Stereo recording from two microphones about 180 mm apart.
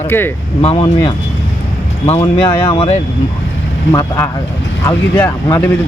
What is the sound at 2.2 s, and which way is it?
Speech, 30° left (ahead or behind).